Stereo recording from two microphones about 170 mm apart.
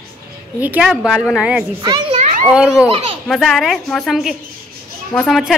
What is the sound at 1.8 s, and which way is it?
Speech, 25° right (ahead or behind).